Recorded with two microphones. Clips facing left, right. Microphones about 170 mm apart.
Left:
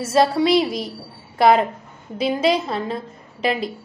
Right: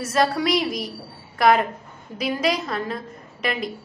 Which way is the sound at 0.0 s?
25° left (ahead or behind).